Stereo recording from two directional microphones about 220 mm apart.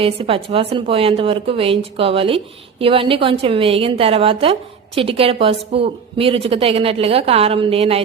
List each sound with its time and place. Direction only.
0.0 s a woman's voice: 25° right (ahead or behind)